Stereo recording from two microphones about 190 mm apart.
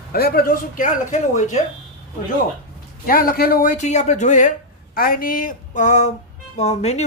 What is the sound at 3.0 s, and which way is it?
Speech, 50° left (ahead or behind).